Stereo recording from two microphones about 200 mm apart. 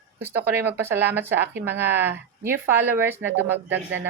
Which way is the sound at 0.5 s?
10° right (ahead or behind).